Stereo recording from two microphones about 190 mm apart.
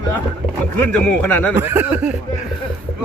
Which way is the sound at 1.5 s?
10° right (ahead or behind).